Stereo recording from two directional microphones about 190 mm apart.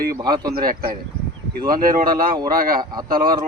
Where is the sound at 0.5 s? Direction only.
50° right (ahead or behind).